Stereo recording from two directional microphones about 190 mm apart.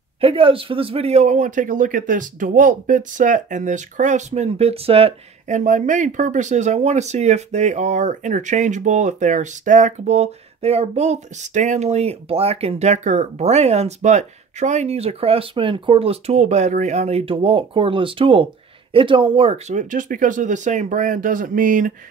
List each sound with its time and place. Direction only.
0.2 s speech: 30° right (ahead or behind); by 21.9 s 45° right (ahead or behind)